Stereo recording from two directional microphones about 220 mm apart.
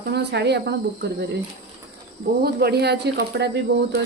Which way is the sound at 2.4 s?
45° right (ahead or behind).